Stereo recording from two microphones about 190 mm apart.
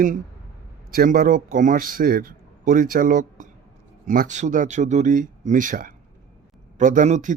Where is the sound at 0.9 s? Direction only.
50° right (ahead or behind).